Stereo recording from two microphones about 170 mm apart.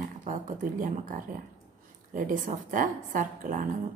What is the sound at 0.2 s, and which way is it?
A woman's voice, 50° right (ahead or behind).